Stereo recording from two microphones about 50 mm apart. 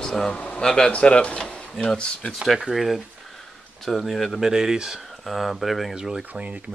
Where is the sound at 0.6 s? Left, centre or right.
Centre.